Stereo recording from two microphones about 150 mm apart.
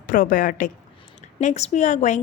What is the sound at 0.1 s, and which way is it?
Speech, 65° left (ahead or behind).